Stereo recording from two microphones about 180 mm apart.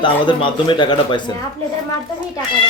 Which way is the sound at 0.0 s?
25° left (ahead or behind).